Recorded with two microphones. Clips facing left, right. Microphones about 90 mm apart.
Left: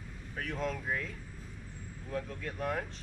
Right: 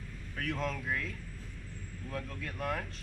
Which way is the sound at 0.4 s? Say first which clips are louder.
Even; 10° left (ahead or behind).